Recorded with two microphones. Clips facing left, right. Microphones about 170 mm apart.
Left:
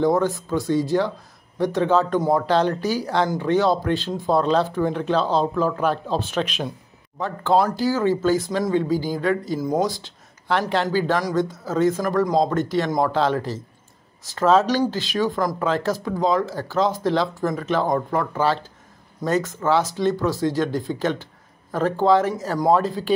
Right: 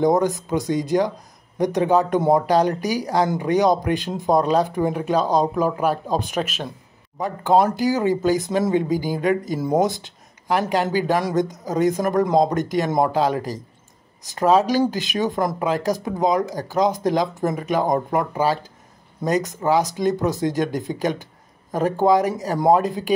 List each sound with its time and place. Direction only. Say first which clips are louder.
0.0 s speech: right 1 dB; 15° right (ahead or behind)
7.2 s speech: right 2 dB; 15° right (ahead or behind)